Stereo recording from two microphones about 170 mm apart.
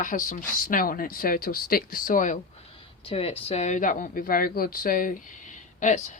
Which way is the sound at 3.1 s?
35° left (ahead or behind).